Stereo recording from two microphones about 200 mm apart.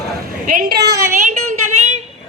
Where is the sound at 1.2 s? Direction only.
35° right (ahead or behind).